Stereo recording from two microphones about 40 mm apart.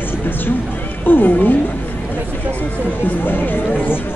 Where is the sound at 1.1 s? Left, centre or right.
Left.